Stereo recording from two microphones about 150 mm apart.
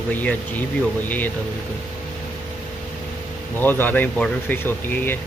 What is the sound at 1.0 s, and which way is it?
Speech, 10° left (ahead or behind).